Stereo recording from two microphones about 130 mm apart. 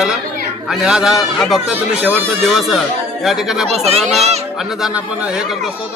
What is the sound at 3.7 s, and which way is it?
Speech, 55° right (ahead or behind).